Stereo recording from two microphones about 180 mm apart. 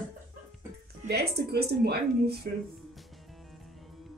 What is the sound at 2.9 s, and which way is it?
Music, centre (ahead or behind).